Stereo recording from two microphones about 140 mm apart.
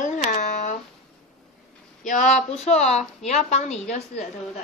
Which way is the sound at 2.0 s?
60° left (ahead or behind).